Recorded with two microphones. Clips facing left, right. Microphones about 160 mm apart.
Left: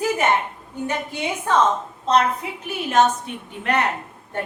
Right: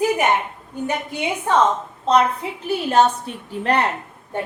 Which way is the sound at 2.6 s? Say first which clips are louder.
Right 2 dB; 30° right (ahead or behind).